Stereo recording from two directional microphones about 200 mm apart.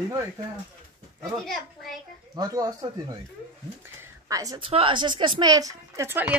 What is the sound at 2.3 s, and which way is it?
Speech, 20° right (ahead or behind).